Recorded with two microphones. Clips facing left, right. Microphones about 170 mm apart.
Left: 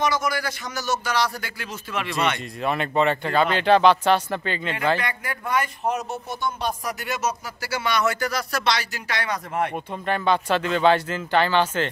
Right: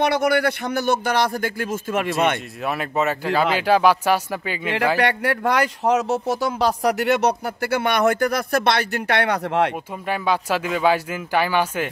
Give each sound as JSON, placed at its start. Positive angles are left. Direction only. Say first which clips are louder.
{"t": 0.0, "sound": "speech", "louder": "right 6 dB", "side_deg": -65}
{"t": 2.6, "sound": "speech", "louder": "left 1 dB", "side_deg": -5}
{"t": 4.9, "sound": "speech", "louder": "right 8 dB", "side_deg": -70}
{"t": 10.0, "sound": "speech", "louder": "even", "side_deg": -10}